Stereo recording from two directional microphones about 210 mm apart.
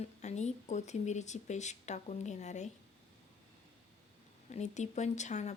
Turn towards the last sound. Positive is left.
turn(degrees=35)  # may be behind; listen again after turning